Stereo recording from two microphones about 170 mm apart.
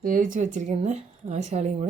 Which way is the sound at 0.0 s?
55° right (ahead or behind).